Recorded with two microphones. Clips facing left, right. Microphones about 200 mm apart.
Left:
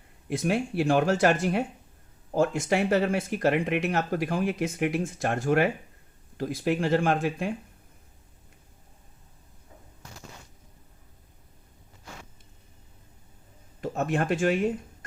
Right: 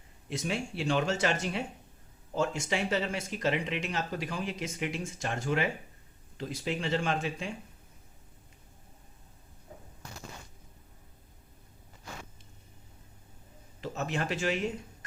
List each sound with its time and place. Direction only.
0.3 s speech: 55° left (ahead or behind)
13.8 s speech: 50° left (ahead or behind)